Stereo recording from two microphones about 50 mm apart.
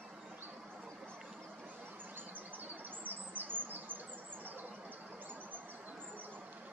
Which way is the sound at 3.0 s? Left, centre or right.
Right.